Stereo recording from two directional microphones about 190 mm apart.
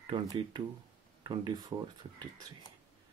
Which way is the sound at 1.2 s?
25° right (ahead or behind).